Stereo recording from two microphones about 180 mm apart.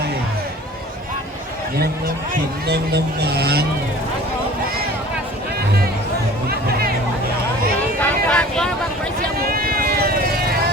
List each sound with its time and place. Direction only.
2.3 s speech: 60° right (ahead or behind)
6.5 s music: 55° right (ahead or behind)
7.9 s vehicle: 10° left (ahead or behind)
9.4 s run: 55° right (ahead or behind)